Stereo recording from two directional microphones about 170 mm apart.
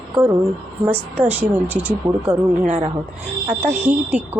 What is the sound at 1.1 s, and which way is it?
Speech, 10° right (ahead or behind).